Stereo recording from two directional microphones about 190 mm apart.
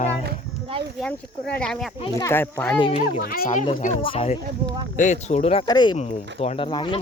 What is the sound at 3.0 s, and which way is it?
Speech, 50° left (ahead or behind).